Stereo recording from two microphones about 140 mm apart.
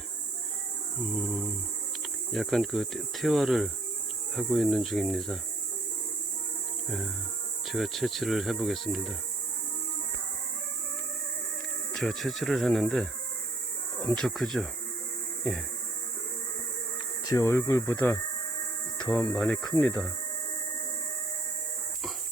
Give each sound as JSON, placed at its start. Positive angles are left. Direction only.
{"t": 0.9, "sound": "speech", "side_deg": 0}
{"t": 6.8, "sound": "cricket", "side_deg": 0}
{"t": 7.7, "sound": "speech", "side_deg": 0}
{"t": 11.9, "sound": "speech", "side_deg": 0}
{"t": 14.2, "sound": "speech", "side_deg": 0}
{"t": 17.2, "sound": "speech", "side_deg": 20}